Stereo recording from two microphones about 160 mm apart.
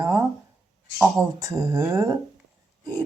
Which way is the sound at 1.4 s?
25° right (ahead or behind).